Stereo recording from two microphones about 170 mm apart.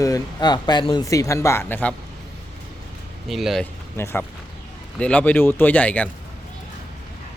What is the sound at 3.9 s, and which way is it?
Speech, 15° left (ahead or behind).